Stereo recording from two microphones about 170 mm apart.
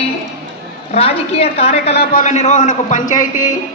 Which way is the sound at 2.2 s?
40° left (ahead or behind).